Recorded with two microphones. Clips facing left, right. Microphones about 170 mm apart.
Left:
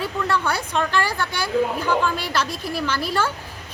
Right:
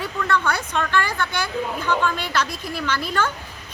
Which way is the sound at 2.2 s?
10° left (ahead or behind).